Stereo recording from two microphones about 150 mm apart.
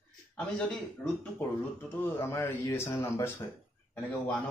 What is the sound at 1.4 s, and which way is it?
Speech, 10° left (ahead or behind).